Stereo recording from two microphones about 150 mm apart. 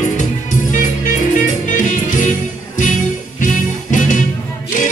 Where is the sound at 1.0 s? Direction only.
60° left (ahead or behind).